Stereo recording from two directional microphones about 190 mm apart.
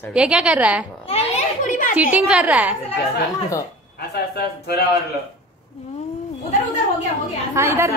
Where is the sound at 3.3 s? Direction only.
15° left (ahead or behind).